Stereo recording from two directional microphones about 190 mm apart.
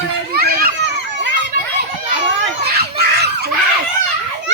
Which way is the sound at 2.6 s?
55° right (ahead or behind).